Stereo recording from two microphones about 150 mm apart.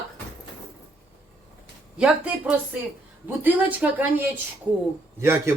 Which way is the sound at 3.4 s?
10° right (ahead or behind).